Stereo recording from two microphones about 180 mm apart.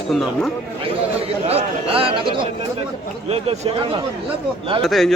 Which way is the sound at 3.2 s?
35° right (ahead or behind).